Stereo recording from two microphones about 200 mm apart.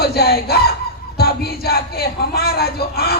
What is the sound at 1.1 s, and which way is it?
Music, 50° left (ahead or behind).